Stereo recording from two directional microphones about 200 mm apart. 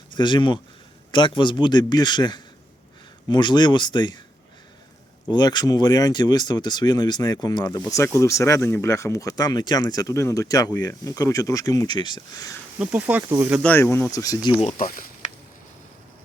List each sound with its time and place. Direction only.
0.2 s speech: 25° left (ahead or behind)
5.3 s speech: 20° left (ahead or behind)
12.8 s speech: 10° right (ahead or behind)
13.6 s speech: 10° left (ahead or behind)
14.6 s speech: 40° left (ahead or behind)